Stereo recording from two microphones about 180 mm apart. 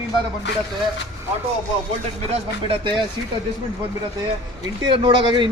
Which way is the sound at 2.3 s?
30° right (ahead or behind).